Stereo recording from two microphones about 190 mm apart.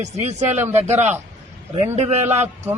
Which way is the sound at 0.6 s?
10° right (ahead or behind).